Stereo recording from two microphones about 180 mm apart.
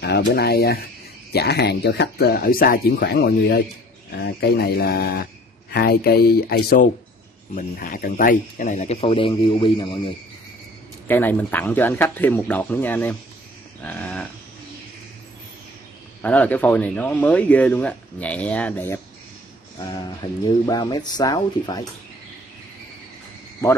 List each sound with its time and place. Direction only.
0.0 s speech: 65° left (ahead or behind); by 10.1 s 30° left (ahead or behind)
11.1 s speech: 10° left (ahead or behind)
13.8 s livestock: 10° left (ahead or behind)
16.2 s speech: 10° left (ahead or behind)
20.2 s speech: 20° left (ahead or behind)